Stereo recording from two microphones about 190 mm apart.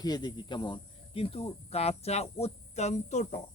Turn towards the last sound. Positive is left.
turn(degrees=40)  # may be behind; listen again after turning